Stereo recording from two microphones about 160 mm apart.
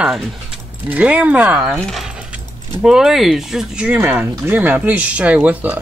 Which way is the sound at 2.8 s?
5° right (ahead or behind).